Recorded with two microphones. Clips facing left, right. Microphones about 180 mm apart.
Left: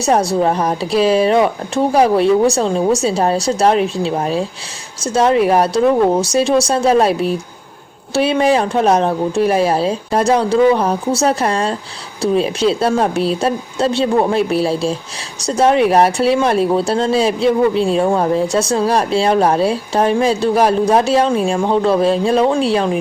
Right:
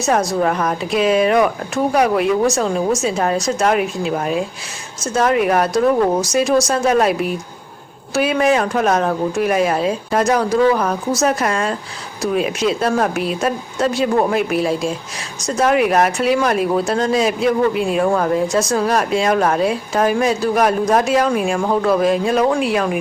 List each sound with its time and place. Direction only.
0.0 s speech: 30° left (ahead or behind)